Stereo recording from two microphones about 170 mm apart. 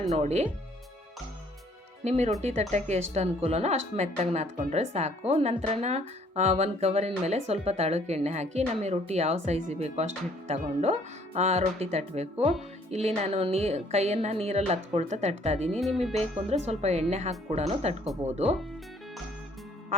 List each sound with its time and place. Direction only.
0.1 s speech: 40° right (ahead or behind)
2.0 s speech: 40° right (ahead or behind)